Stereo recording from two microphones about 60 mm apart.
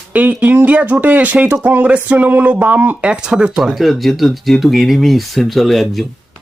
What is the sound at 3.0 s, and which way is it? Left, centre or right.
Speech, centre.